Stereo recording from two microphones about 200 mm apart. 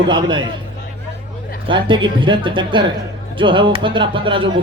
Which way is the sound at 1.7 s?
25° right (ahead or behind).